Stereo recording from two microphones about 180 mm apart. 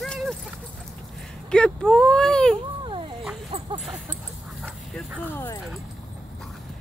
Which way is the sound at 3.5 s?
30° right (ahead or behind).